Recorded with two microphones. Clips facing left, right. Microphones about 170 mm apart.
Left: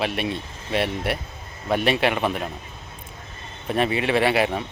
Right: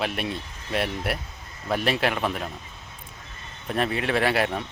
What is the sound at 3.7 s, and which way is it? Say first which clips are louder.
Speech: left 3 dB; centre (ahead or behind).